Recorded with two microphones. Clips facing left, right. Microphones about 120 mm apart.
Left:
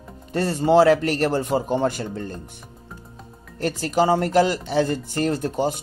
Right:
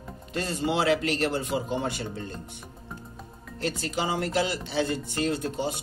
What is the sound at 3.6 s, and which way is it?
Speech, 50° left (ahead or behind).